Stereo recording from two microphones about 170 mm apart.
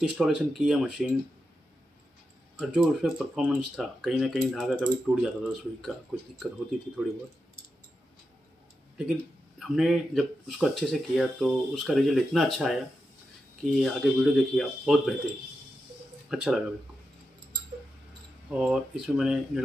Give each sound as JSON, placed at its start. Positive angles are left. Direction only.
{"t": 0.0, "sound": "speech", "side_deg": -5}
{"t": 2.6, "sound": "speech", "side_deg": 0}
{"t": 9.6, "sound": "speech", "side_deg": 0}
{"t": 16.3, "sound": "speech", "side_deg": -5}
{"t": 18.5, "sound": "speech", "side_deg": -5}